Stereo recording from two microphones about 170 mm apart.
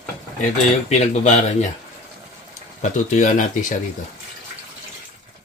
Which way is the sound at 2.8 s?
45° left (ahead or behind).